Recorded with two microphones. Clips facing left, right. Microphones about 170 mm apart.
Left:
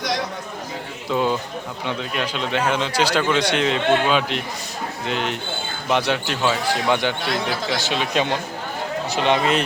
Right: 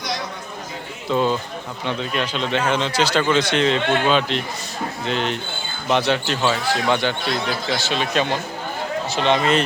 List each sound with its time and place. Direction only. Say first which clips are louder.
1.1 s speech: right 1 dB; 10° left (ahead or behind)